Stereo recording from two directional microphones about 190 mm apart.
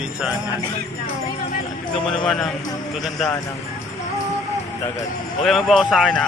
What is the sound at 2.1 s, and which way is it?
Speech, 5° left (ahead or behind).